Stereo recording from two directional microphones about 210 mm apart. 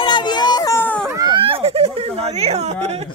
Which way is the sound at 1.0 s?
15° right (ahead or behind).